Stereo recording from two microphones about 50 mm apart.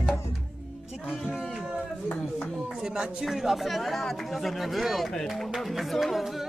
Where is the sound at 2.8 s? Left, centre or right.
Centre.